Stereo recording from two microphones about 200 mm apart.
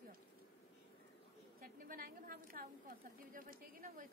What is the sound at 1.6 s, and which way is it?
Speech, 45° right (ahead or behind).